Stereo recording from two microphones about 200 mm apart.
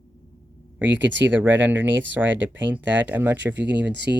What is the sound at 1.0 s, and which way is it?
Speech, 10° right (ahead or behind).